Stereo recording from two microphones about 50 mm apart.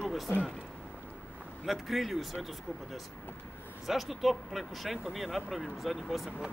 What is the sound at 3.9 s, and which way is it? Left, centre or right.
Speech, centre.